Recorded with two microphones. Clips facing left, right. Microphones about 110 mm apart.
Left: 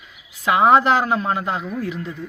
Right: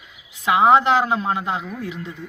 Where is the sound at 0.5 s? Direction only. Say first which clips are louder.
Even; 15° right (ahead or behind).